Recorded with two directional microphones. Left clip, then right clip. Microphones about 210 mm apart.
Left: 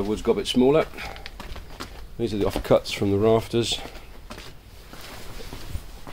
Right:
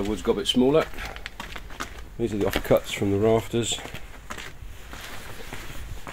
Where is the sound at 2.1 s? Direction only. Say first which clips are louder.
Even; centre (ahead or behind).